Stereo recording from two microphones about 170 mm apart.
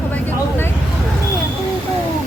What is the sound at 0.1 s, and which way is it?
Vehicle, 10° left (ahead or behind).